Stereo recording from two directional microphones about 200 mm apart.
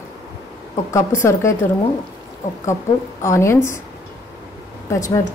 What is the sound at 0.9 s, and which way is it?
Speech, 15° left (ahead or behind).